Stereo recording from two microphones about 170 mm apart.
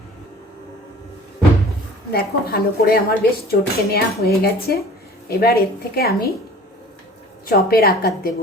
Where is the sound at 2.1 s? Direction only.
65° left (ahead or behind).